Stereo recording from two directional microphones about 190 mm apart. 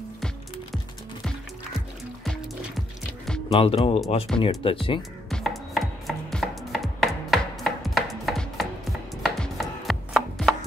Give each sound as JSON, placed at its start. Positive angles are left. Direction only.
{"t": 3.3, "sound": "music", "side_deg": 5}
{"t": 3.5, "sound": "speech", "side_deg": 30}
{"t": 5.3, "sound": "chopping", "side_deg": 0}